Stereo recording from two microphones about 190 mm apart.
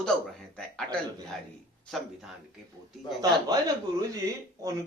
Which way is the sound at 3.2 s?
20° right (ahead or behind).